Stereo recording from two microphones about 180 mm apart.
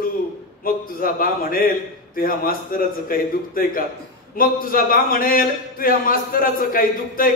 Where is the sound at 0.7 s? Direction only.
50° left (ahead or behind).